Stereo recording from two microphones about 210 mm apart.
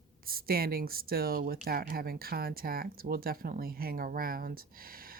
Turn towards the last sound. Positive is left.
turn(degrees=-45)  # may be behind; listen again after turning